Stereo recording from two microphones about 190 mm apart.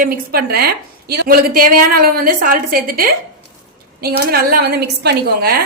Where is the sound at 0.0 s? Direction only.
50° right (ahead or behind).